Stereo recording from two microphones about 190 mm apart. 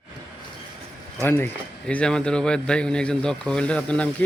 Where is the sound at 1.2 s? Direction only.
10° left (ahead or behind).